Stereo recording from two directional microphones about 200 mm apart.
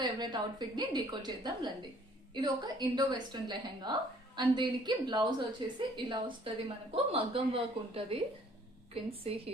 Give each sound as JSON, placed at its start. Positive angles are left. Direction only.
{"t": 0.0, "sound": "a woman's voice", "side_deg": -20}